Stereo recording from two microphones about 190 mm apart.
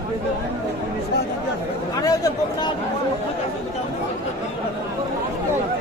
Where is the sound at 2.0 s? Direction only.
20° left (ahead or behind).